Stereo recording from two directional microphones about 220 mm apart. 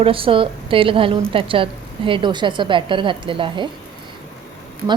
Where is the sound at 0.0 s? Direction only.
25° right (ahead or behind).